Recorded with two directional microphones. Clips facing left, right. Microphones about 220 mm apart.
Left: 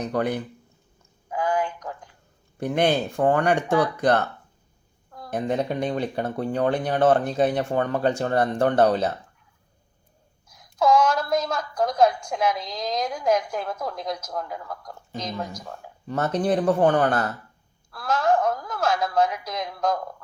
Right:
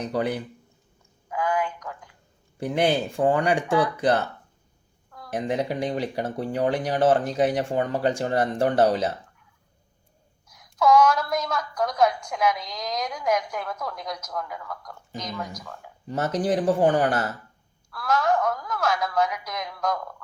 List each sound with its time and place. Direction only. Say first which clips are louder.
0.0 s speech: left 1 dB; 10° right (ahead or behind)
1.3 s a sound: left 1 dB; 30° left (ahead or behind)
2.6 s speech: left 1 dB; 10° right (ahead or behind)
5.4 s speech: left 1 dB; 15° right (ahead or behind)
10.5 s a woman's voice: right 1 dB; 30° left (ahead or behind)
16.0 s speech: left 1 dB; 15° right (ahead or behind)
17.9 s a woman's voice: left 1 dB; 30° left (ahead or behind)